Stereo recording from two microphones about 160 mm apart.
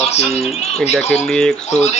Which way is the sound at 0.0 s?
40° left (ahead or behind).